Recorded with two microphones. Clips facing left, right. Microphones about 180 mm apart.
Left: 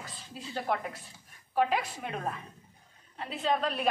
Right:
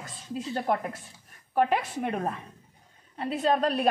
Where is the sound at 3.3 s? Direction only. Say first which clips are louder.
Right 5 dB; 45° right (ahead or behind).